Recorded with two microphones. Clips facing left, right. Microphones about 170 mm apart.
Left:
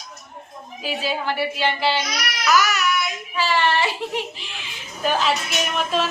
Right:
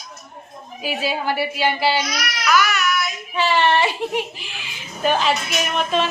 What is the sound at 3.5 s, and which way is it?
Speech, 20° right (ahead or behind).